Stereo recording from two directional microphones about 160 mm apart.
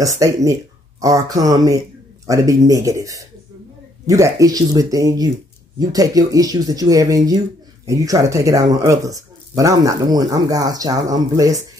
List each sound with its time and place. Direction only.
0.0 s speech: 20° right (ahead or behind)